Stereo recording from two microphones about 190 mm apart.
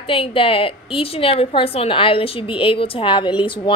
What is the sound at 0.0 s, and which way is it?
A woman's voice, 30° left (ahead or behind).